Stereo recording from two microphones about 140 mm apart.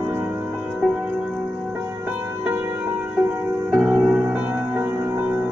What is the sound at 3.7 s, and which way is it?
Music, 10° right (ahead or behind).